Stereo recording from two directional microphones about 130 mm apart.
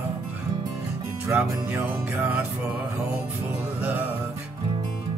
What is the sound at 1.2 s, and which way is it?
Music, 20° right (ahead or behind).